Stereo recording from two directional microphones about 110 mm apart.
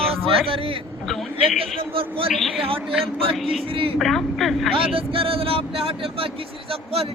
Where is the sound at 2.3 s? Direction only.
5° left (ahead or behind).